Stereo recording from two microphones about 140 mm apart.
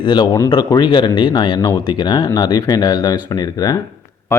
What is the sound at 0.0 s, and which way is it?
Speech, 30° left (ahead or behind).